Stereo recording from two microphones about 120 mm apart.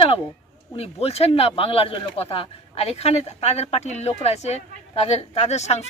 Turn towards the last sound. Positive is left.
turn(degrees=65)  # may be behind; listen again after turning